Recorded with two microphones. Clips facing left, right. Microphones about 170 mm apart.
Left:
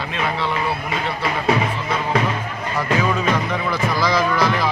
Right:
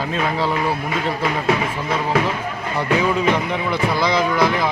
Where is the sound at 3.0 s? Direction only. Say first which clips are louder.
Right 3 dB; 15° right (ahead or behind).